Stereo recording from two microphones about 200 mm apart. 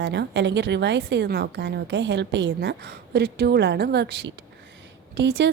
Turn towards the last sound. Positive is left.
turn(degrees=-60)  # may be behind; listen again after turning